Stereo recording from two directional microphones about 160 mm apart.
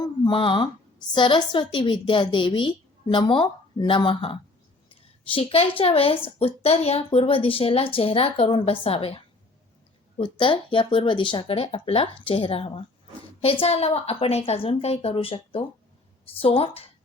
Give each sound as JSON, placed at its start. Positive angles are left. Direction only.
{"t": 0.0, "sound": "a woman's voice", "side_deg": 30}